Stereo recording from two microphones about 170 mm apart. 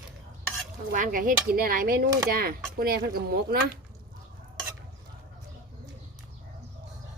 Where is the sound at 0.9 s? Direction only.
50° right (ahead or behind).